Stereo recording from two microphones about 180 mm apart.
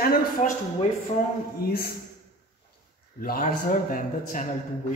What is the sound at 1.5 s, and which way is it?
Speech, 60° left (ahead or behind).